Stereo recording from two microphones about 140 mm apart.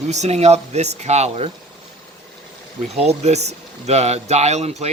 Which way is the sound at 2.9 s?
50° right (ahead or behind).